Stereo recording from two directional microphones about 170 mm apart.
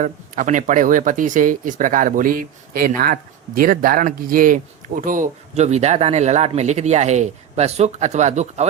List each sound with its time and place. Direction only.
0.0 s speech: 45° right (ahead or behind)